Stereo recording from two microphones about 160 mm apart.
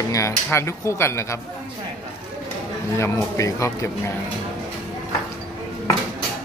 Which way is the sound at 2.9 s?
15° left (ahead or behind).